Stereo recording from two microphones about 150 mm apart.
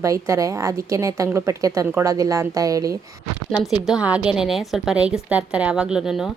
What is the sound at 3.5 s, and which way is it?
A woman's voice, centre (ahead or behind).